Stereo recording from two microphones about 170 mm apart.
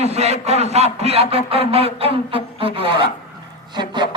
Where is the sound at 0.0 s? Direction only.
40° right (ahead or behind).